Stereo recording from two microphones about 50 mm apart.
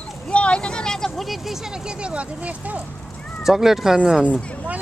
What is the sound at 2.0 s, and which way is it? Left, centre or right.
Speech, right.